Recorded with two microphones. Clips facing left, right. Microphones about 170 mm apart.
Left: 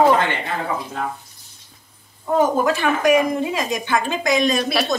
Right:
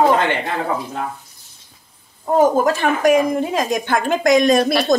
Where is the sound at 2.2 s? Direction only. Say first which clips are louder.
Right 3 dB; 40° right (ahead or behind).